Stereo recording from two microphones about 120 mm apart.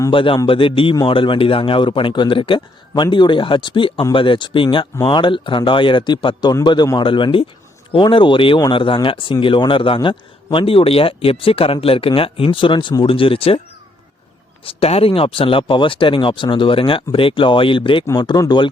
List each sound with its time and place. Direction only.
0.1 s a man's voice: 45° left (ahead or behind)
14.6 s a man's voice: 55° left (ahead or behind); by 18.7 s 35° left (ahead or behind)